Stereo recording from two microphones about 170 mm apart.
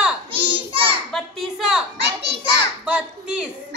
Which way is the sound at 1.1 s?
Centre (ahead or behind).